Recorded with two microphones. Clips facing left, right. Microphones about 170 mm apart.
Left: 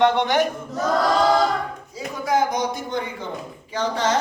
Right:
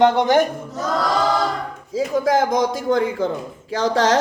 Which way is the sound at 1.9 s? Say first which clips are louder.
Right 6 dB; 90° right.